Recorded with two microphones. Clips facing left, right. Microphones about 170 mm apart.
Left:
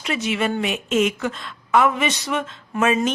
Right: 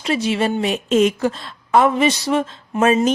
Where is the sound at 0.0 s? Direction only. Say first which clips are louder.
Right 4 dB; 35° right (ahead or behind).